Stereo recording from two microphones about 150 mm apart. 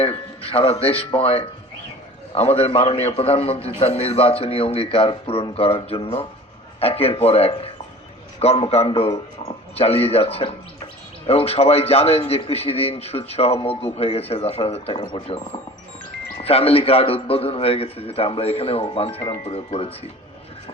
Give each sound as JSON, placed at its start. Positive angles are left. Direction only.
{"t": 0.0, "sound": "a man's voice", "side_deg": 40}
{"t": 16.4, "sound": "a man's voice", "side_deg": 40}